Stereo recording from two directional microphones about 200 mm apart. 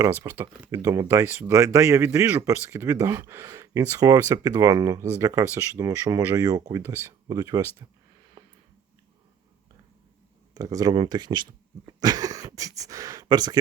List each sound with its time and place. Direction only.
0.0 s speech: 10° right (ahead or behind)
10.5 s speech: 15° right (ahead or behind)